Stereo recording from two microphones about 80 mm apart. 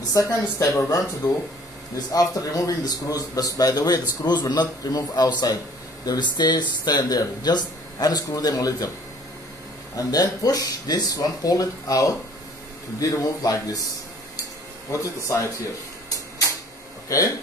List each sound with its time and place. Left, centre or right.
0.1 s speech: left
9.9 s speech: left
14.9 s speech: left